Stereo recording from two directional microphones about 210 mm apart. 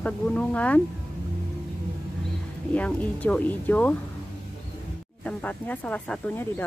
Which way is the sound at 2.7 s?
5° left (ahead or behind).